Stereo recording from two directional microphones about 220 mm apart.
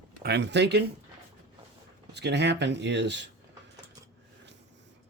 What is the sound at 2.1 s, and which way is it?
Speech, 50° right (ahead or behind).